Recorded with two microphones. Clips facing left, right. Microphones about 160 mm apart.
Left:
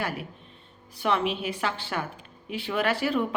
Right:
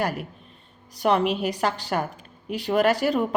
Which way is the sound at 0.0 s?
45° right (ahead or behind).